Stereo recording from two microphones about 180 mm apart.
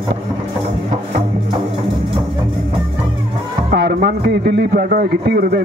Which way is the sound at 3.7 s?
60° right (ahead or behind).